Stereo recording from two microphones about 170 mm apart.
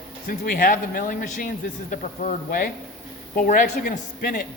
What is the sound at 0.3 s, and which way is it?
A man's voice, 55° left (ahead or behind).